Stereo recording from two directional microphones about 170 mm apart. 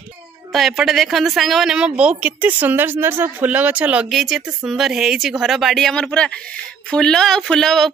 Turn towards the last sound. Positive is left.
turn(degrees=0)  # may be behind; listen again after turning